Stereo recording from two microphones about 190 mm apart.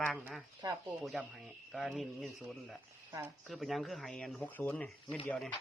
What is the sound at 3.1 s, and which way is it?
Speech, 10° right (ahead or behind).